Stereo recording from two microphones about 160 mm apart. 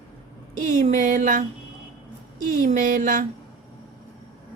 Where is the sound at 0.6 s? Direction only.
50° right (ahead or behind).